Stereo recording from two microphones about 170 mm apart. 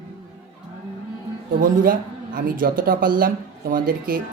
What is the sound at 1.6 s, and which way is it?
Speech, 55° right (ahead or behind).